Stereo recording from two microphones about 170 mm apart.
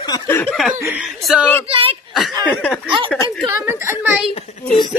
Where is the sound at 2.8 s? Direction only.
30° right (ahead or behind).